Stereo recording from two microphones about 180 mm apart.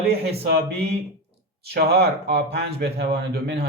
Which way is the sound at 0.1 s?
60° right (ahead or behind).